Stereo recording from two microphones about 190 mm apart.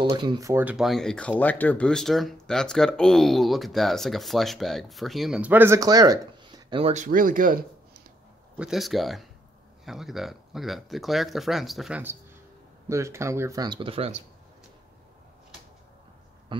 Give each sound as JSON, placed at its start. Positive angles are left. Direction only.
{"t": 0.0, "sound": "speech", "side_deg": -25}
{"t": 8.5, "sound": "speech", "side_deg": 0}